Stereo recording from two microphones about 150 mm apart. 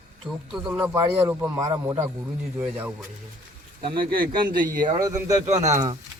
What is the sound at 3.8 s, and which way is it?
Speech, 35° right (ahead or behind).